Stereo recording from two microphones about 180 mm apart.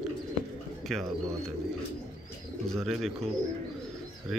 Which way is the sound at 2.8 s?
Centre (ahead or behind).